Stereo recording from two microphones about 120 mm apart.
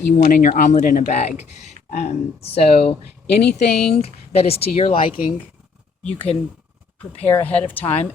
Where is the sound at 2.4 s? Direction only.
55° left (ahead or behind).